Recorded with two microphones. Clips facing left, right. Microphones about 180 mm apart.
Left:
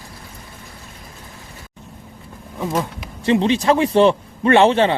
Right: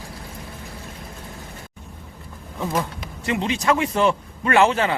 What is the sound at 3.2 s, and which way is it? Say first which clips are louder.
A man's voice: left 6 dB; 30° left (ahead or behind).